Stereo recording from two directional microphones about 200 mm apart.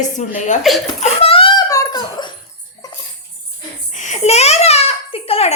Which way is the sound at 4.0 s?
35° left (ahead or behind).